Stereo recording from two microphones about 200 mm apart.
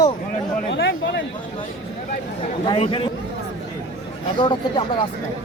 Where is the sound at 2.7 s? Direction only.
25° left (ahead or behind).